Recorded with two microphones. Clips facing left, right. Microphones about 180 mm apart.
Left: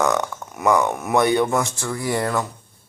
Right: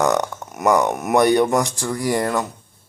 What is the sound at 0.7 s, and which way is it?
Speech, 15° right (ahead or behind).